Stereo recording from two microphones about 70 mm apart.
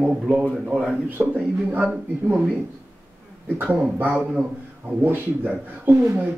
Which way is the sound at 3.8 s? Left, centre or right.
Right.